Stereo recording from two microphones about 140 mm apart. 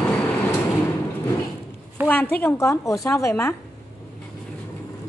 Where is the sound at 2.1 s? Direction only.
15° left (ahead or behind).